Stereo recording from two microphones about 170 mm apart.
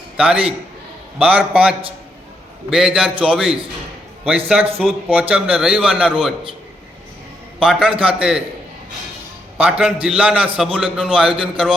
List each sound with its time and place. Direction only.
0.2 s a man's voice: 5° right (ahead or behind)
7.6 s a man's voice: 5° right (ahead or behind)
9.6 s a man's voice: 5° right (ahead or behind)